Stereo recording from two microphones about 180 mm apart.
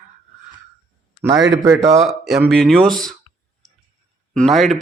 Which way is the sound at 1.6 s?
15° right (ahead or behind).